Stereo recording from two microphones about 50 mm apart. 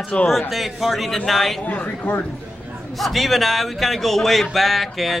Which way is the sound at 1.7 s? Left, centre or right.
Left.